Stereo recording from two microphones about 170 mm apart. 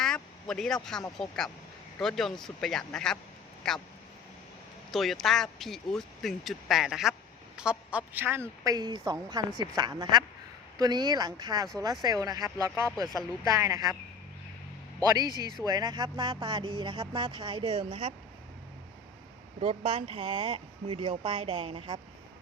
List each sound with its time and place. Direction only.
0.0 s a sound: 5° left (ahead or behind)
1.1 s speech: centre (ahead or behind)
4.9 s speech: centre (ahead or behind); by 13.9 s 20° right (ahead or behind)
15.6 s speech: 25° right (ahead or behind)
19.6 s speech: 30° right (ahead or behind)